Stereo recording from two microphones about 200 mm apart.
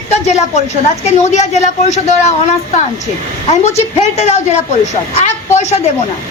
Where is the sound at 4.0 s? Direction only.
30° left (ahead or behind).